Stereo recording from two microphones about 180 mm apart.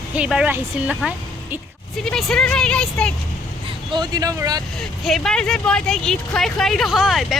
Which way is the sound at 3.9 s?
20° right (ahead or behind).